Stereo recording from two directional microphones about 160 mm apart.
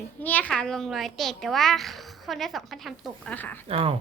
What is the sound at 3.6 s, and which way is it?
Speech, 35° right (ahead or behind).